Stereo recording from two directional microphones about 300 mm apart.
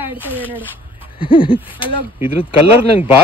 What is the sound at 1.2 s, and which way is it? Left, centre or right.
Speech, centre.